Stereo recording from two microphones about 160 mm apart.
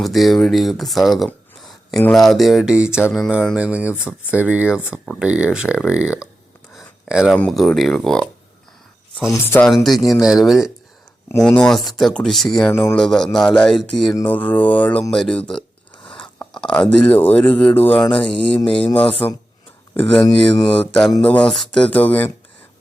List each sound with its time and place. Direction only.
0.0 s speech: centre (ahead or behind)
6.7 s a sound: centre (ahead or behind)
7.3 s speech: 5° left (ahead or behind)
9.3 s speech: 15° left (ahead or behind)
9.6 s speech: centre (ahead or behind)
12.7 s speech: 15° left (ahead or behind)
13.0 s speech: 5° left (ahead or behind)
18.0 s speech: 30° left (ahead or behind)
18.3 s speech: 10° left (ahead or behind)